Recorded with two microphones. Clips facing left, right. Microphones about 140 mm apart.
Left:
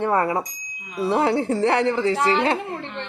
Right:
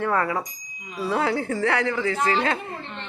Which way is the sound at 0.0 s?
25° left (ahead or behind).